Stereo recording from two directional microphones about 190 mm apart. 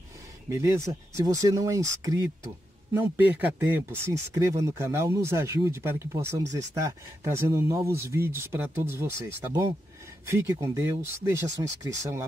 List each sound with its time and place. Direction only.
0.5 s speech: 15° right (ahead or behind)